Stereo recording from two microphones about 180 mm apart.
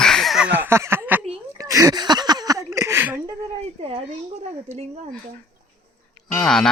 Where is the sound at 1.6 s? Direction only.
20° right (ahead or behind).